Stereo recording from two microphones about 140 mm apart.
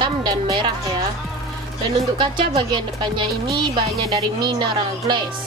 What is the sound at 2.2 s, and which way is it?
Speech, 35° right (ahead or behind).